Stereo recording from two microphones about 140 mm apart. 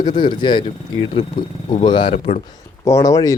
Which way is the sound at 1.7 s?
35° left (ahead or behind).